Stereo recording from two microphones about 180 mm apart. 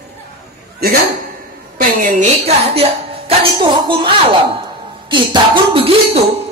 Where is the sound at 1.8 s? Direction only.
45° right (ahead or behind); by 4.4 s 25° right (ahead or behind).